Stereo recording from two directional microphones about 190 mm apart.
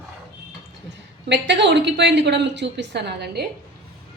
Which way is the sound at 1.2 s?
65° right (ahead or behind).